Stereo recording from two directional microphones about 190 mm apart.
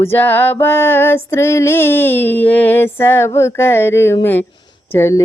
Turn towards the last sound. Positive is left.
turn(degrees=15)  # may be behind; listen again after turning